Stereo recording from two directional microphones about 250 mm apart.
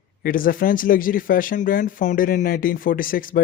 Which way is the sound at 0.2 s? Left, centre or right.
Left.